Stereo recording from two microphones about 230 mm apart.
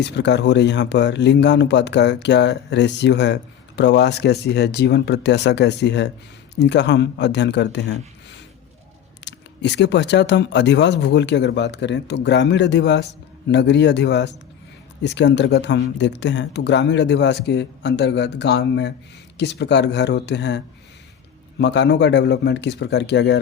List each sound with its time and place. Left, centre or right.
0.0 s speech: left
9.2 s speech: left
21.6 s speech: left